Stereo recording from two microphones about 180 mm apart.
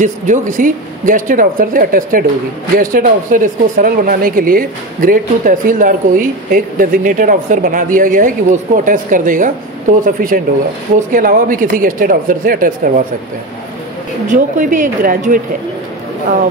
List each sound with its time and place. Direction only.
0.0 s speech: 45° right (ahead or behind)
14.2 s speech: 45° right (ahead or behind)